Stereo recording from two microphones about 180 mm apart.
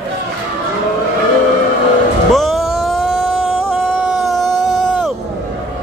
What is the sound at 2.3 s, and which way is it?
Music, centre (ahead or behind).